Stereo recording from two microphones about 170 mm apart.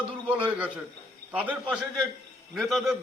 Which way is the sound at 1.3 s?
10° right (ahead or behind).